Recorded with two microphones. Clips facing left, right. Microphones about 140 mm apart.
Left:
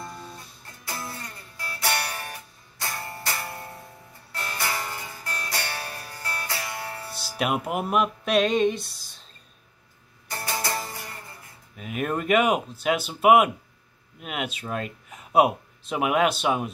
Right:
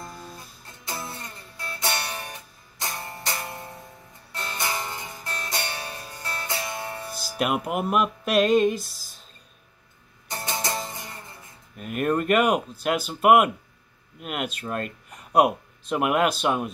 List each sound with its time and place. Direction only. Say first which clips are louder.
0.0 s music: left 1 dB; centre (ahead or behind)
0.8 s music: right 1 dB; 20° right (ahead or behind)
7.2 s music: right 1 dB; centre (ahead or behind)
10.2 s music: even; 20° right (ahead or behind)
11.7 s speech: right 3 dB; centre (ahead or behind)